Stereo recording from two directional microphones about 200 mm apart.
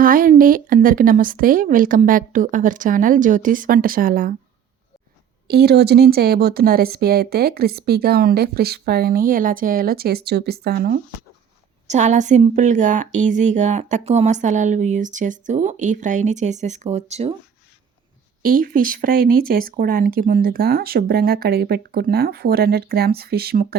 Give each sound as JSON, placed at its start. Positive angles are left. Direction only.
{"t": 0.0, "sound": "speech", "side_deg": -45}
{"t": 5.5, "sound": "speech", "side_deg": -55}
{"t": 11.9, "sound": "a woman's voice", "side_deg": -35}
{"t": 18.4, "sound": "speech", "side_deg": -45}